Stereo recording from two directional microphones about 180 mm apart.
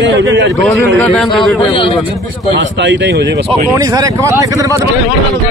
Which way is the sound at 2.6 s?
85° right.